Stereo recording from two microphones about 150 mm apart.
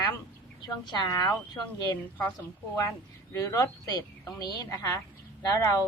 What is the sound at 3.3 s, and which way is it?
Speech, 20° left (ahead or behind).